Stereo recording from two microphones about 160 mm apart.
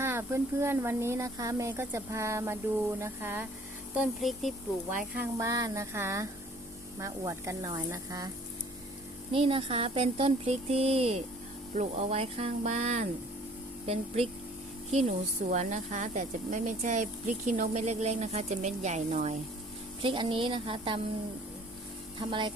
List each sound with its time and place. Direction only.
0.0 s speech: 15° right (ahead or behind)
3.9 s speech: centre (ahead or behind)
5.1 s speech: 15° right (ahead or behind)
9.3 s speech: 35° right (ahead or behind)
20.0 s speech: 30° right (ahead or behind)
22.2 s speech: 30° right (ahead or behind)